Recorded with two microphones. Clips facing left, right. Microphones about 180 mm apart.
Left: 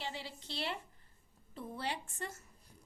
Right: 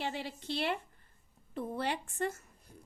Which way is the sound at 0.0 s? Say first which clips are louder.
Right 6 dB; 55° right (ahead or behind).